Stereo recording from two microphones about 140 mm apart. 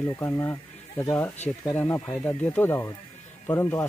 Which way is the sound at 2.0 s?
10° left (ahead or behind).